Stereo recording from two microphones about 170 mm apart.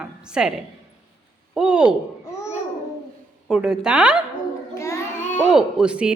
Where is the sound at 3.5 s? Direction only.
5° right (ahead or behind).